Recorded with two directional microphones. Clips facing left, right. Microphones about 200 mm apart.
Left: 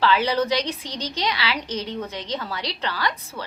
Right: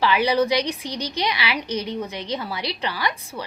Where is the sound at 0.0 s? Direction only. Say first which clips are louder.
Right 1 dB; 15° right (ahead or behind).